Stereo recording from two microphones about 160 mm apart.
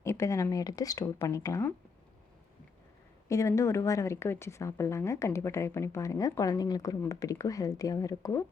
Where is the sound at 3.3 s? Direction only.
20° left (ahead or behind).